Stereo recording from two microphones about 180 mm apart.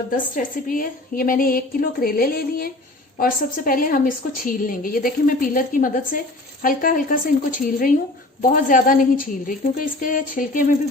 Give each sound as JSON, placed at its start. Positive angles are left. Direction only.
{"t": 0.3, "sound": "a woman's voice", "side_deg": 50}